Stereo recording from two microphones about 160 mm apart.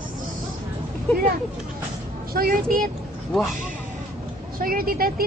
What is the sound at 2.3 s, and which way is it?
Speech, 65° right (ahead or behind).